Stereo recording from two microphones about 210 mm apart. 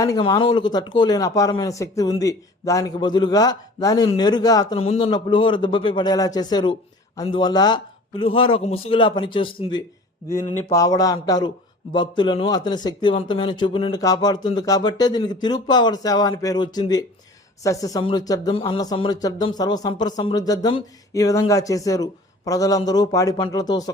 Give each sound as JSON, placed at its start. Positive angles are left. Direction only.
{"t": 0.0, "sound": "a man's voice", "side_deg": 15}
{"t": 4.8, "sound": "a man's voice", "side_deg": 30}